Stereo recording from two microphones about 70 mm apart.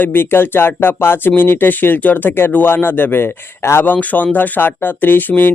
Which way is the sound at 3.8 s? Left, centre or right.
Left.